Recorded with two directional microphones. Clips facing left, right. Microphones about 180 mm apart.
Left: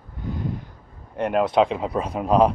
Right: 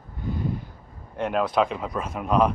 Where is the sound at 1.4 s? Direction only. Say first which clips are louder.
Left 4 dB; 25° left (ahead or behind).